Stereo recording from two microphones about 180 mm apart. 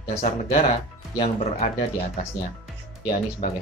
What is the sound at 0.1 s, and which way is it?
Speech, 35° left (ahead or behind).